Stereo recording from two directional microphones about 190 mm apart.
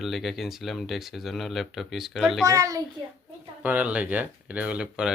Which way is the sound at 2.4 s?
15° right (ahead or behind).